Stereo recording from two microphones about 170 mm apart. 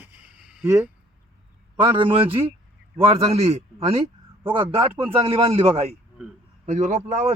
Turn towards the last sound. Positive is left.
turn(degrees=-40)  # may be behind; listen again after turning